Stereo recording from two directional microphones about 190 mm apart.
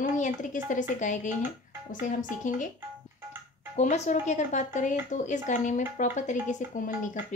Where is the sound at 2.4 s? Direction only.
40° left (ahead or behind).